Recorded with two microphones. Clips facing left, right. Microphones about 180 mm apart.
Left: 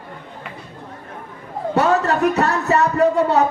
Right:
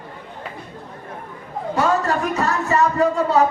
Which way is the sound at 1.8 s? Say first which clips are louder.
Left 3 dB; 65° left (ahead or behind).